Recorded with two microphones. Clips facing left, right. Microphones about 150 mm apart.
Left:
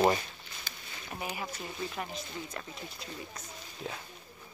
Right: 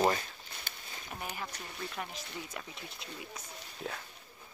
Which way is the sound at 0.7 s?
60° right (ahead or behind).